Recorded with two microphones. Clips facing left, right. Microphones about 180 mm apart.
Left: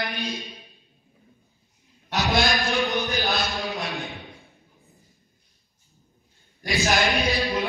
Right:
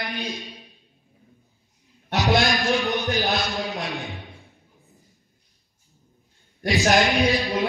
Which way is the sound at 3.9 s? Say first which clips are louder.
Right 1 dB; centre (ahead or behind).